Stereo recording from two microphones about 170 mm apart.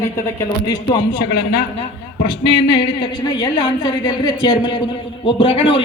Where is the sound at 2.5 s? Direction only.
30° left (ahead or behind).